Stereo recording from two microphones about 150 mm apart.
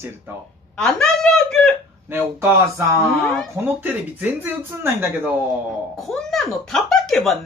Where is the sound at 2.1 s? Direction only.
15° right (ahead or behind).